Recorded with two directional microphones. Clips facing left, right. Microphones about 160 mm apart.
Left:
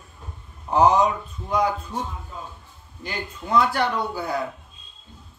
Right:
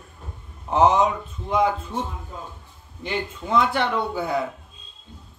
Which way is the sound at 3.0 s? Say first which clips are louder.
Right 4 dB; 25° right (ahead or behind).